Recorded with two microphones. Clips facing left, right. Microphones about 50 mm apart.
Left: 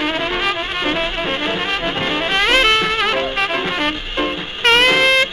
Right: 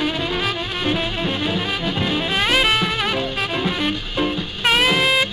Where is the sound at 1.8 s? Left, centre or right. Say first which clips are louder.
Left 2 dB; left.